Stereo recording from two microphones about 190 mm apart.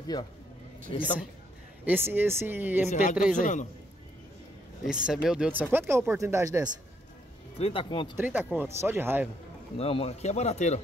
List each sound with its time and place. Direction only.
0.0 s speech: 20° left (ahead or behind)
1.9 s speech: 10° right (ahead or behind)
2.9 s a man's voice: 40° left (ahead or behind)
4.8 s speech: 5° right (ahead or behind)
7.5 s speech: 30° left (ahead or behind)
8.2 s speech: 10° right (ahead or behind)
9.8 s speech: 30° left (ahead or behind)